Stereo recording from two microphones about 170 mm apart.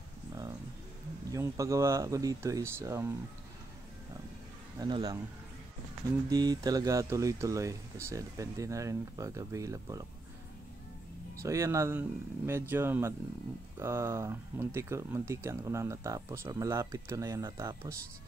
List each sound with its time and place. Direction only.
0.3 s bird: 20° right (ahead or behind)
1.3 s speech: 20° right (ahead or behind)
4.7 s speech: 25° right (ahead or behind)
6.2 s speech: 20° right (ahead or behind)
11.3 s speech: 15° right (ahead or behind)